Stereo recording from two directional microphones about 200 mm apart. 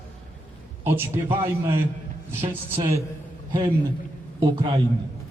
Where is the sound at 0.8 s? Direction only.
10° right (ahead or behind).